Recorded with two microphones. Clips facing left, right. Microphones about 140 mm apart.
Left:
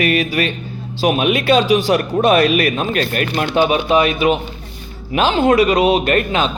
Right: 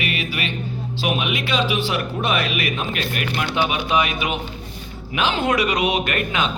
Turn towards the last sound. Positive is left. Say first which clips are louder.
# left 6 dB
turn(degrees=35)  # may be behind; listen again after turning